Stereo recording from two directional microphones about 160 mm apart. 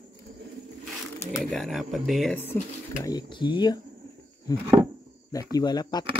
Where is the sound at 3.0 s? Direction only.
25° left (ahead or behind).